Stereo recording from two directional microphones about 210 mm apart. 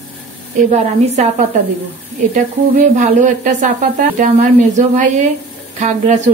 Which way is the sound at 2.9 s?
35° right (ahead or behind).